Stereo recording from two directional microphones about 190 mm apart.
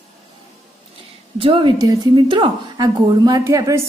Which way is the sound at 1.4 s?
25° right (ahead or behind).